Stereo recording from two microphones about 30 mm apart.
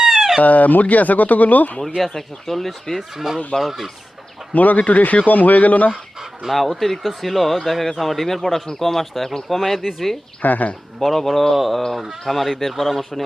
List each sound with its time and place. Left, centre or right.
0.0 s a sound: centre
0.4 s speech: left
2.0 s speech: centre
3.2 s speech: centre
4.5 s speech: left
6.5 s a man's voice: centre
10.4 s speech: left
11.0 s a man's voice: centre